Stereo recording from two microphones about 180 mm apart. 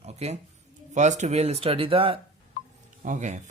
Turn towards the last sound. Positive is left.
turn(degrees=-45)  # may be behind; listen again after turning